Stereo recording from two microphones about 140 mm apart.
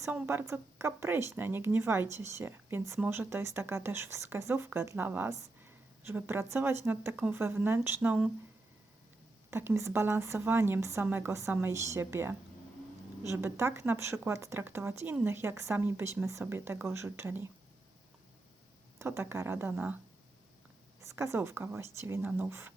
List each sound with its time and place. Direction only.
0.0 s speech: 15° right (ahead or behind)
9.5 s speech: 15° right (ahead or behind)
18.9 s speech: 15° right (ahead or behind)
21.0 s speech: 20° right (ahead or behind)